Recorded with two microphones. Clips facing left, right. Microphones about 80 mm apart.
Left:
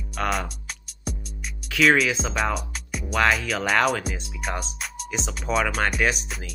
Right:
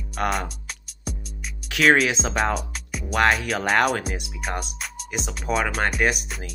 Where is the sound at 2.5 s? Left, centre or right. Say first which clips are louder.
Right 1 dB; centre.